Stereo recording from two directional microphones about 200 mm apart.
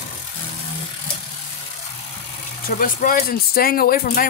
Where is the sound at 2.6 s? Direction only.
40° left (ahead or behind).